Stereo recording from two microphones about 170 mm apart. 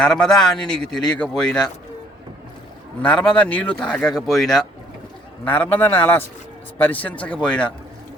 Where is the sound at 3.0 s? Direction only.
5° left (ahead or behind).